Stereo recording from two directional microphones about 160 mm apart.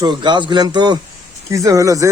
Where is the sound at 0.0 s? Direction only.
30° right (ahead or behind).